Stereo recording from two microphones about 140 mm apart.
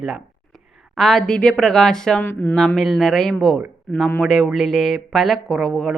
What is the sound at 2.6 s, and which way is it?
A woman's voice, centre (ahead or behind).